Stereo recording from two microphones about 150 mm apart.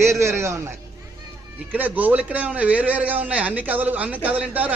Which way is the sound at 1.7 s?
10° right (ahead or behind).